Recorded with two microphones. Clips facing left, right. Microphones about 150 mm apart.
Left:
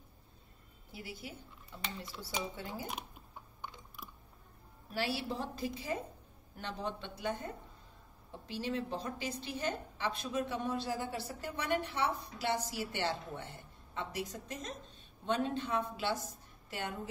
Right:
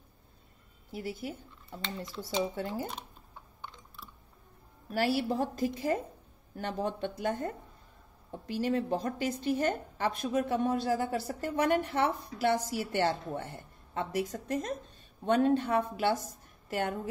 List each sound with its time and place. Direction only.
0.9 s speech: 50° right (ahead or behind)
3.6 s mechanisms: 15° left (ahead or behind)
4.9 s a woman's voice: 50° right (ahead or behind)